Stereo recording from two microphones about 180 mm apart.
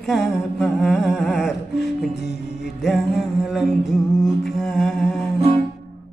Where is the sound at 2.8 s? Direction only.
Centre (ahead or behind).